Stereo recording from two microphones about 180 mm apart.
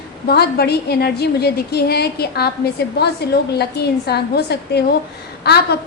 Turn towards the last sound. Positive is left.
turn(degrees=65)  # may be behind; listen again after turning